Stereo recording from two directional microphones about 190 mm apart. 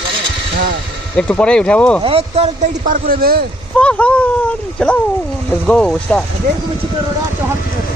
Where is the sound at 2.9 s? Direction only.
50° right (ahead or behind).